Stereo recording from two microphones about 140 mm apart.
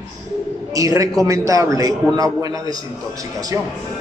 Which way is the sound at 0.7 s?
25° right (ahead or behind).